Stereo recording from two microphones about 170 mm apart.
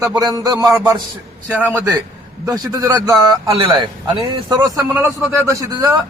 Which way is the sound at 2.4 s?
25° right (ahead or behind).